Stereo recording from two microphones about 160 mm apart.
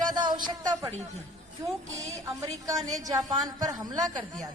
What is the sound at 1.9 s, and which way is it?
A woman's voice, 20° right (ahead or behind).